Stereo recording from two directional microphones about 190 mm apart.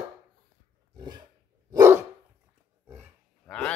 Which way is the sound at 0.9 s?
20° right (ahead or behind).